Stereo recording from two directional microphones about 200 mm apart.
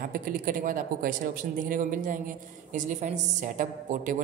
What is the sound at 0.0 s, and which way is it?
Speech, 45° right (ahead or behind).